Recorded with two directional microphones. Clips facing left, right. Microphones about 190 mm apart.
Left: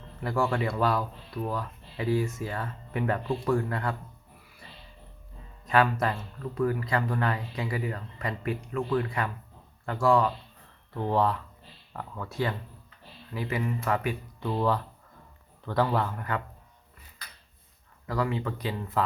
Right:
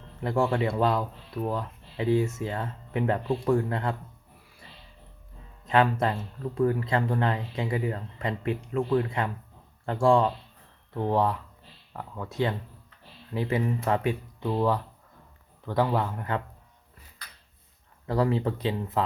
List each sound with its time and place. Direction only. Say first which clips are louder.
0.2 s speech: right 2 dB; 25° right (ahead or behind)
5.6 s speech: right 1 dB; 25° right (ahead or behind)
18.1 s speech: right 4 dB; 30° right (ahead or behind)